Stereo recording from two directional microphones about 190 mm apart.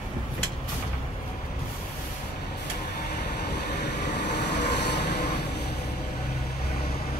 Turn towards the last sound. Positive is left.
turn(degrees=60)  # may be behind; listen again after turning